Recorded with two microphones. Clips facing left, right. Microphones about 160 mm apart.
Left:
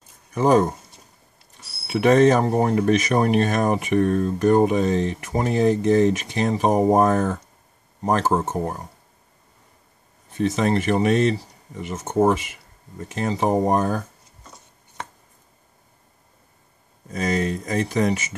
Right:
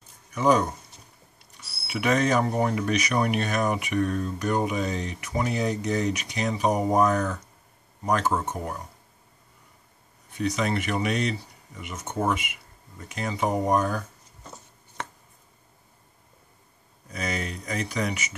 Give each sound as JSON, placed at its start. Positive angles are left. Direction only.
{"t": 0.3, "sound": "speech", "side_deg": 40}
{"t": 1.9, "sound": "speech", "side_deg": 40}
{"t": 10.3, "sound": "speech", "side_deg": 40}
{"t": 17.1, "sound": "speech", "side_deg": 40}